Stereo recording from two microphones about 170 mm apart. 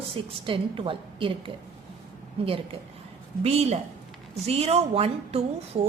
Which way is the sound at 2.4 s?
35° right (ahead or behind).